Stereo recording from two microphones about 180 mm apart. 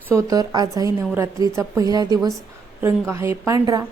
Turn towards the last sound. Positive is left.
turn(degrees=-20)  # may be behind; listen again after turning